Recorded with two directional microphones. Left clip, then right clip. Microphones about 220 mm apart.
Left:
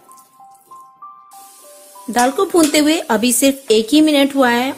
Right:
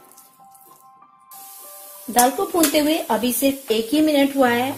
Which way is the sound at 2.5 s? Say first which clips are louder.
Left 5 dB; 35° left (ahead or behind).